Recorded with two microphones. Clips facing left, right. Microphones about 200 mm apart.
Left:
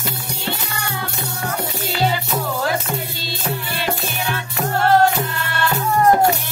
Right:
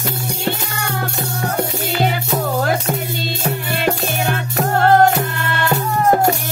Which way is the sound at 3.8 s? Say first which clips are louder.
Right 6 dB; 50° right (ahead or behind).